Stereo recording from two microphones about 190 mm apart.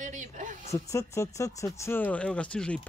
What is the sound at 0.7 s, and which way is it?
A woman's voice, 15° left (ahead or behind).